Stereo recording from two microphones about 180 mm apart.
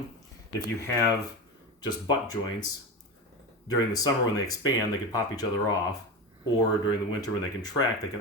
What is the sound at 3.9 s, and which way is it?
Speech, 20° left (ahead or behind).